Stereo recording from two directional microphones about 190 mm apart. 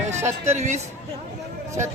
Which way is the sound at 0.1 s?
35° right (ahead or behind).